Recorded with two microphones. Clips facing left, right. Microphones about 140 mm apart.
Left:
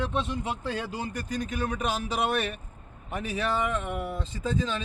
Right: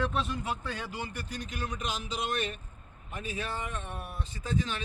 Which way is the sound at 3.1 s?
80° left.